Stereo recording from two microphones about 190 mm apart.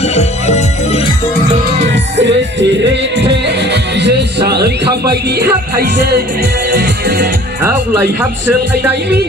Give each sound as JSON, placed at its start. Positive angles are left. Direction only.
{"t": 0.0, "sound": "music", "side_deg": 35}
{"t": 1.8, "sound": "music", "side_deg": -70}
{"t": 7.6, "sound": "speech", "side_deg": -10}